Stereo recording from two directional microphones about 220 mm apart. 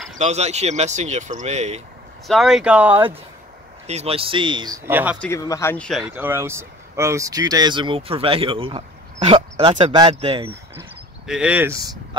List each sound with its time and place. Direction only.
0.2 s speech: 30° right (ahead or behind)
2.2 s speech: centre (ahead or behind)
3.8 s speech: 30° right (ahead or behind)
4.8 s speech: 10° right (ahead or behind)
5.2 s speech: 15° left (ahead or behind); by 10.5 s 25° right (ahead or behind)
10.8 s speech: 5° right (ahead or behind)